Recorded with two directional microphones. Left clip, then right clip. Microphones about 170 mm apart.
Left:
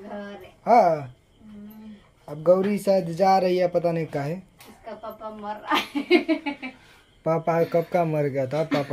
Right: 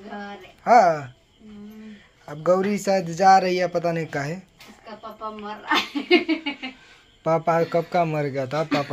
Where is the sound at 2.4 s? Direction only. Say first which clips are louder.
Left 1 dB; 10° left (ahead or behind).